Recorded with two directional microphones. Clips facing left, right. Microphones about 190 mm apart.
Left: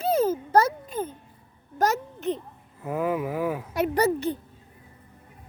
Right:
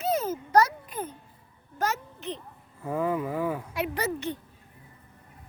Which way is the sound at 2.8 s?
5° left (ahead or behind).